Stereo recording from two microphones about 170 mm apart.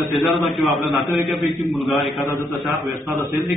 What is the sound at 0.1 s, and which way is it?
A man's voice, centre (ahead or behind).